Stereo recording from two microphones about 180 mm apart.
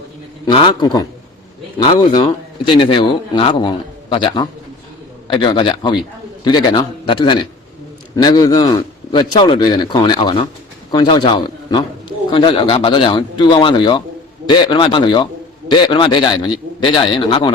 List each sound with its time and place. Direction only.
0.4 s a man's voice: 25° left (ahead or behind)